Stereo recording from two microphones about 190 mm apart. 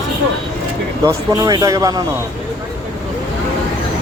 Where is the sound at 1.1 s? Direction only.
20° right (ahead or behind).